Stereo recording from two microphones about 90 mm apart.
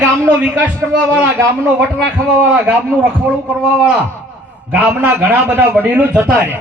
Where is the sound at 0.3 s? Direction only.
15° right (ahead or behind).